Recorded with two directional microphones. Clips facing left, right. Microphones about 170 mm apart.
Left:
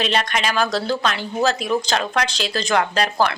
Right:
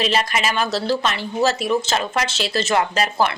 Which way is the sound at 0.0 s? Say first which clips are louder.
Right 1 dB; 5° right (ahead or behind).